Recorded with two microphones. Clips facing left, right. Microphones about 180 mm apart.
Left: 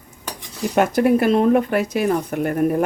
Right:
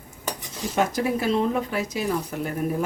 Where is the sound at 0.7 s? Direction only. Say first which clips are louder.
Left 7 dB; 60° left (ahead or behind).